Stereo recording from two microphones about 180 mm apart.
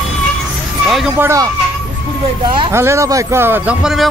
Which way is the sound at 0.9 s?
Centre (ahead or behind).